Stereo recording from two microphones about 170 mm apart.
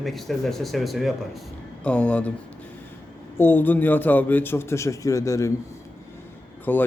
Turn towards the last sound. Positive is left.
turn(degrees=10)  # may be behind; listen again after turning